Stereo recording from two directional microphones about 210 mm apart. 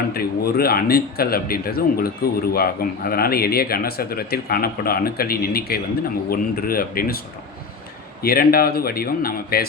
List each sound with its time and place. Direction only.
0.1 s speech: 45° left (ahead or behind)
8.2 s speech: 45° left (ahead or behind)